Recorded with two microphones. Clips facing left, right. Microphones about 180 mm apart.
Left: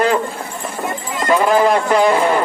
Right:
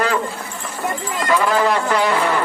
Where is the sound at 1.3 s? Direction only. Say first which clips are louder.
Left 4 dB; 25° left (ahead or behind).